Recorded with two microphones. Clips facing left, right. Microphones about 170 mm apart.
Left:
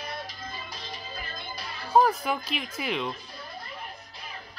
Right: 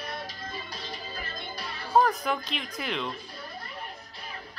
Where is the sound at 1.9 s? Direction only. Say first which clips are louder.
Left 1 dB; centre (ahead or behind).